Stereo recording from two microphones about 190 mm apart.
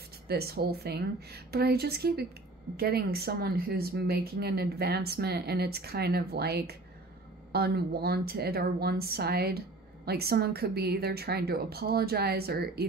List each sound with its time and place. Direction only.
0.3 s speech: 55° right (ahead or behind)